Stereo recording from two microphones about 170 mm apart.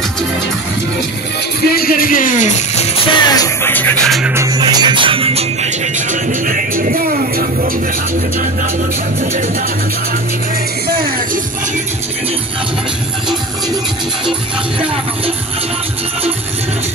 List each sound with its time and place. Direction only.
1.7 s speech: 60° left (ahead or behind); by 3.2 s 40° left (ahead or behind)
3.2 s music: 25° left (ahead or behind); by 4.3 s centre (ahead or behind)
4.3 s music: 20° right (ahead or behind); by 7.7 s 60° right (ahead or behind)